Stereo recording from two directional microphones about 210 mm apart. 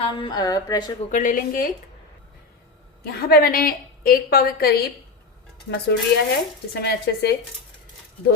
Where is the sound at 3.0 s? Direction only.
50° left (ahead or behind).